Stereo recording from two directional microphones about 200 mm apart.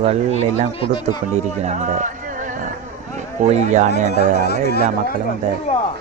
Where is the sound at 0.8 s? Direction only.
25° left (ahead or behind).